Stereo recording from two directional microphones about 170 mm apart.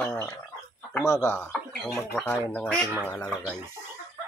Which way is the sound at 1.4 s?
Centre (ahead or behind).